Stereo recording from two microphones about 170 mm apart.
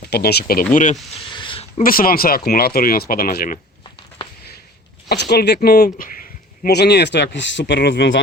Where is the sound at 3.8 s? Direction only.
30° left (ahead or behind).